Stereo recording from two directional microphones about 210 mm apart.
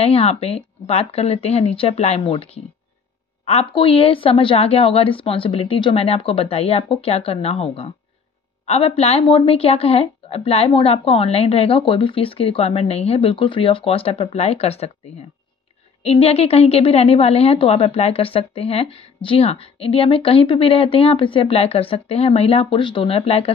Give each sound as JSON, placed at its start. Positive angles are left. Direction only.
{"t": 0.0, "sound": "a woman's voice", "side_deg": 30}
{"t": 16.0, "sound": "a woman's voice", "side_deg": 30}